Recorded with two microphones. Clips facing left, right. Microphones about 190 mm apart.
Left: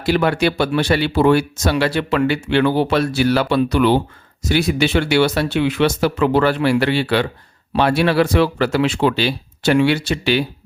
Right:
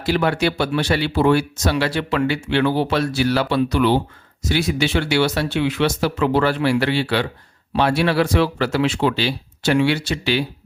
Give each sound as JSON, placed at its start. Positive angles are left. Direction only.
{"t": 0.0, "sound": "speech", "side_deg": 60}